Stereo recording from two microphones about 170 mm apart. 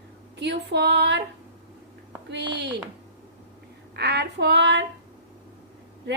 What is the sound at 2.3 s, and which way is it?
Female singing, 80° right.